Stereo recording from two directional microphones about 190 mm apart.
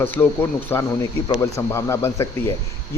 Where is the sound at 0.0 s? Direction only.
10° left (ahead or behind).